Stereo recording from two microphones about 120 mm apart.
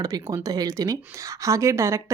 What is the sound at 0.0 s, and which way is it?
Speech, 30° right (ahead or behind).